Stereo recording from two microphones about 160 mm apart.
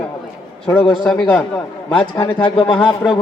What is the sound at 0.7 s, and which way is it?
Speech, 10° left (ahead or behind).